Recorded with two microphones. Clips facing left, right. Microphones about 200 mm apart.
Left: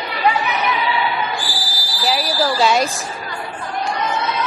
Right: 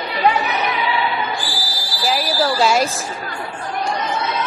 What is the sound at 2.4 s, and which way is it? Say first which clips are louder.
Speech: even; centre (ahead or behind).